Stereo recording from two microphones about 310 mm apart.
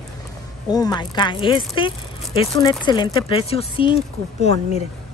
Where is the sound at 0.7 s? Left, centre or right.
Centre.